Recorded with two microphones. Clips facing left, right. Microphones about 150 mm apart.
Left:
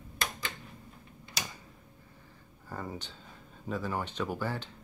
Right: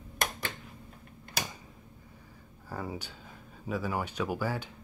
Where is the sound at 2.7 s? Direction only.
10° right (ahead or behind).